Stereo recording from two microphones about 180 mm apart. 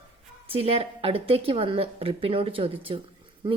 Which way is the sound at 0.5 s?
30° right (ahead or behind).